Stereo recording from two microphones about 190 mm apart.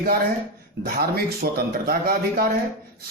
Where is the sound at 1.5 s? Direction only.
50° right (ahead or behind).